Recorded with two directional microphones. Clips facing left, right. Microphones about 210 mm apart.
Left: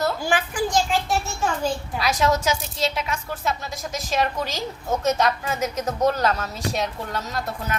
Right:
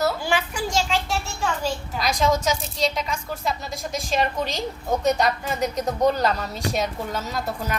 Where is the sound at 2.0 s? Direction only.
5° left (ahead or behind).